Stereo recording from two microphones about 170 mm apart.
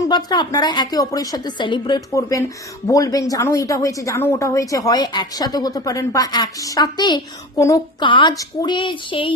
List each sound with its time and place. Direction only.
0.1 s speech: 25° left (ahead or behind)